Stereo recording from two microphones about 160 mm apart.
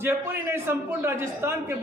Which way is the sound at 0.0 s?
15° right (ahead or behind).